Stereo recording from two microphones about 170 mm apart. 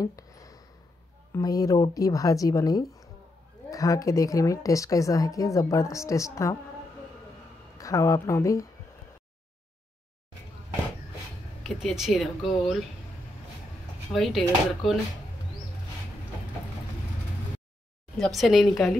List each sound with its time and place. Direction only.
0.0 s a sound: 20° left (ahead or behind)
1.3 s a woman's voice: 20° left (ahead or behind)
7.7 s a woman's voice: 20° left (ahead or behind)
11.6 s speech: centre (ahead or behind)
14.1 s speech: centre (ahead or behind)
18.1 s speech: centre (ahead or behind)